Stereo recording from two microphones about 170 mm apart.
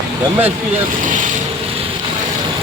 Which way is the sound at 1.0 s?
50° right (ahead or behind).